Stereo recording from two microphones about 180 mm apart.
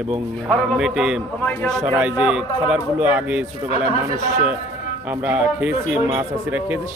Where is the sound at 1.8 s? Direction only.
10° right (ahead or behind).